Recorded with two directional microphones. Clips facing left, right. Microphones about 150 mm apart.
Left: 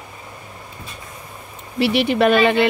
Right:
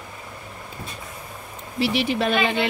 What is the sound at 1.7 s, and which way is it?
Speech, 60° left (ahead or behind).